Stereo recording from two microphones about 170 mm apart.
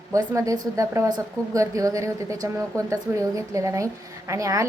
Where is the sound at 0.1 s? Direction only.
20° right (ahead or behind).